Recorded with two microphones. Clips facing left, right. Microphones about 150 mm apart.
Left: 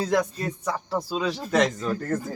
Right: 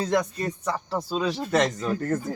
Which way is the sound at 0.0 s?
5° left (ahead or behind).